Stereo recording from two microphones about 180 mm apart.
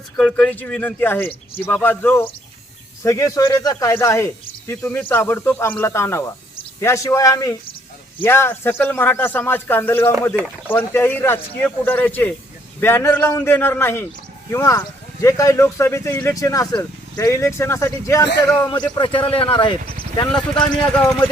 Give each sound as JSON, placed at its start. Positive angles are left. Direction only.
{"t": 0.2, "sound": "speech", "side_deg": 5}
{"t": 20.8, "sound": "speech", "side_deg": 10}